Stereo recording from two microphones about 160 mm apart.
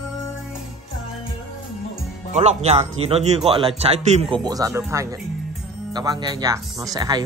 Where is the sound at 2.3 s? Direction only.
45° right (ahead or behind).